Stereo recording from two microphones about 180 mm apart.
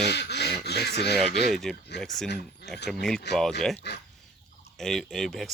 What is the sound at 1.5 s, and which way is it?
Speech, centre (ahead or behind).